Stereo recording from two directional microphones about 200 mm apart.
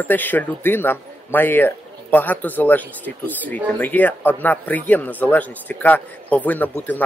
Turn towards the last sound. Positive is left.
turn(degrees=10)  # may be behind; listen again after turning